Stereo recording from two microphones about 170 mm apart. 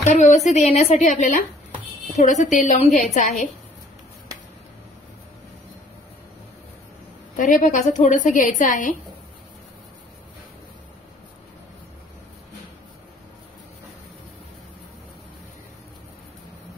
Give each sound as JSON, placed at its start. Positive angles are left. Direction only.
{"t": 0.0, "sound": "a woman's voice", "side_deg": 45}
{"t": 7.3, "sound": "a woman's voice", "side_deg": 50}